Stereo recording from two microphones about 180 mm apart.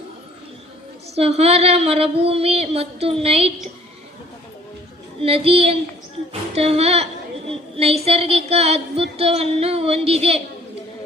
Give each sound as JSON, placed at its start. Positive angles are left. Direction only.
{"t": 1.1, "sound": "a woman's voice", "side_deg": -35}
{"t": 5.2, "sound": "a woman's voice", "side_deg": -30}